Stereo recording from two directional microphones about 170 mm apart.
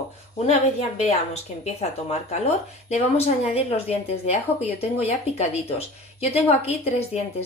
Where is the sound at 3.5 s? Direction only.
35° left (ahead or behind).